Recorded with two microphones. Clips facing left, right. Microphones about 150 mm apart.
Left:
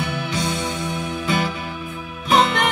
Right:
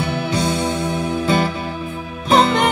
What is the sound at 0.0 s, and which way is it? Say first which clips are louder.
Music: right 4 dB; 30° right (ahead or behind).